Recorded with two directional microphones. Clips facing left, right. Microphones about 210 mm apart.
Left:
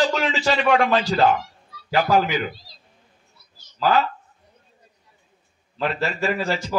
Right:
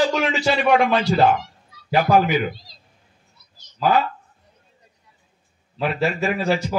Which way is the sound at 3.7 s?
10° right (ahead or behind).